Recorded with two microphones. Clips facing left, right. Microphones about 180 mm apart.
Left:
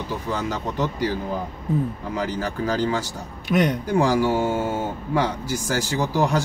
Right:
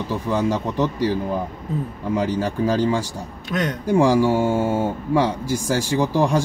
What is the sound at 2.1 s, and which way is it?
Speech, 30° right (ahead or behind).